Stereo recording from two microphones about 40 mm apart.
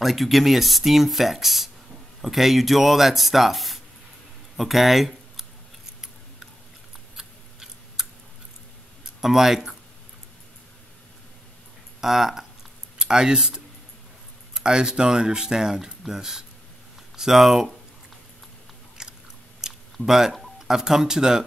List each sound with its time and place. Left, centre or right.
0.0 s speech: centre
7.2 s a sound: centre
9.2 s speech: centre
12.0 s speech: centre
12.9 s a sound: centre
14.5 s speech: centre
19.0 s biting: centre
19.6 s chewing: centre
20.6 s speech: centre